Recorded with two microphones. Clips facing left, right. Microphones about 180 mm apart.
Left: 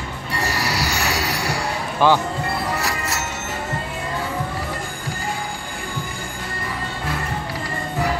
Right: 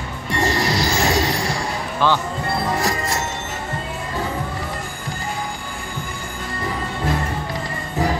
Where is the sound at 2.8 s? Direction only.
35° right (ahead or behind).